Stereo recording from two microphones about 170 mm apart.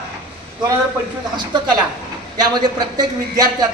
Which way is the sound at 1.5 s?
25° right (ahead or behind).